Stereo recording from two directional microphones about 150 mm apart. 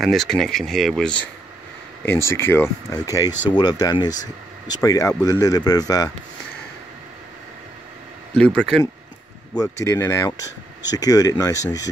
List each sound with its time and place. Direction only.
0.0 s speech: centre (ahead or behind)
2.0 s speech: 15° left (ahead or behind)
8.5 s speech: 5° left (ahead or behind)
9.6 s speech: 20° left (ahead or behind)